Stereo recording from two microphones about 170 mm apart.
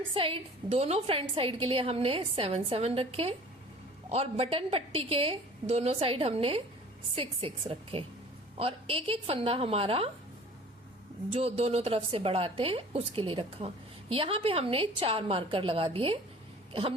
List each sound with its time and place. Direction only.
0.1 s a woman's voice: 30° right (ahead or behind)
11.3 s a woman's voice: 35° right (ahead or behind)